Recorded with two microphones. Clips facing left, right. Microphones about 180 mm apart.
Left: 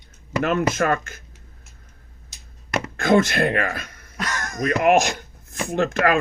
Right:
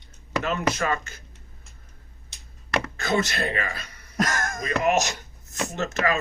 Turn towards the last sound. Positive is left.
turn(degrees=50)  # may be behind; listen again after turning